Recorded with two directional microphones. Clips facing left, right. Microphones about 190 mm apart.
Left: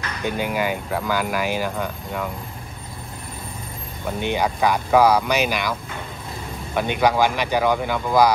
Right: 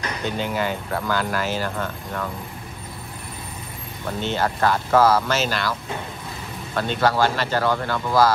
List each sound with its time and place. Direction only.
0.2 s speech: 10° left (ahead or behind)
4.2 s speech: 15° left (ahead or behind)